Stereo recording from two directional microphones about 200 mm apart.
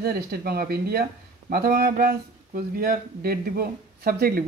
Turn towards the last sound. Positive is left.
turn(degrees=-50)  # may be behind; listen again after turning